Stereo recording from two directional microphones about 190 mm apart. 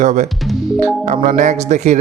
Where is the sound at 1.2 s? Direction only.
40° right (ahead or behind).